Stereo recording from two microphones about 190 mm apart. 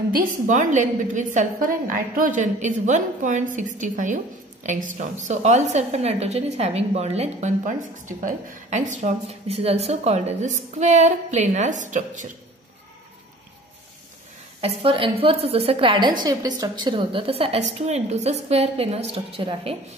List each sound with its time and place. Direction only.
0.1 s a woman's voice: 40° right (ahead or behind)
14.6 s a woman's voice: 30° right (ahead or behind)